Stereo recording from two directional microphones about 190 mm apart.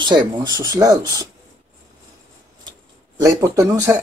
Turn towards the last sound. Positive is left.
turn(degrees=-15)  # may be behind; listen again after turning